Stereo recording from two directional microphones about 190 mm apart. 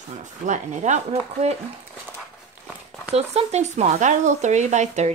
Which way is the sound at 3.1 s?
35° right (ahead or behind).